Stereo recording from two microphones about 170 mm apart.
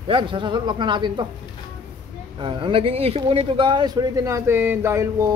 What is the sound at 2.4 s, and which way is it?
Speech, 30° right (ahead or behind).